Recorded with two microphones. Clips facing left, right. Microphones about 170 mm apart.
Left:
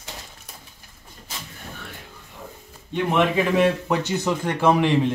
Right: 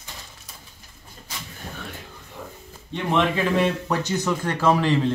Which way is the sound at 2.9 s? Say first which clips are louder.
Left 2 dB; 5° left (ahead or behind).